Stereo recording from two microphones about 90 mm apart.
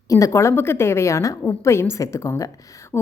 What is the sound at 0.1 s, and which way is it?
A woman's voice, 35° left (ahead or behind).